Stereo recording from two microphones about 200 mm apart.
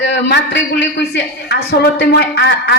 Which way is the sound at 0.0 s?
60° left (ahead or behind).